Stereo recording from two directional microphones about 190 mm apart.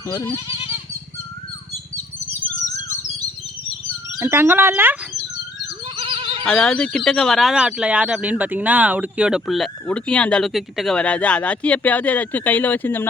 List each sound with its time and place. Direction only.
0.1 s speech: 15° left (ahead or behind)
4.2 s speech: 10° right (ahead or behind)
6.4 s speech: 5° left (ahead or behind)